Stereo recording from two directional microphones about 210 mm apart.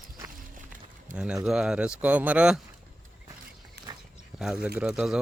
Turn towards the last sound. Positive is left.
turn(degrees=-5)  # may be behind; listen again after turning